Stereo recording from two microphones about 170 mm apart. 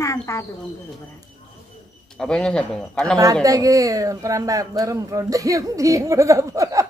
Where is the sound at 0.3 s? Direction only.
15° left (ahead or behind).